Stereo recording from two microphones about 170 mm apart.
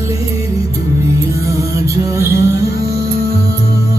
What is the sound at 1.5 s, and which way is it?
Music, 20° right (ahead or behind).